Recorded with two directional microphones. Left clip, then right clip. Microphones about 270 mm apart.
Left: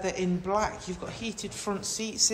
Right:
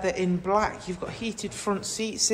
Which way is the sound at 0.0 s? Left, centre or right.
Centre.